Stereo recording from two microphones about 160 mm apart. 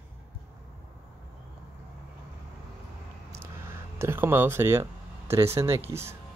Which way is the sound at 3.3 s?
15° right (ahead or behind).